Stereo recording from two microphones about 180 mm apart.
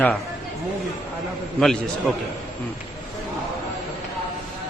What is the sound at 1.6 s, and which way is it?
Speech, centre (ahead or behind).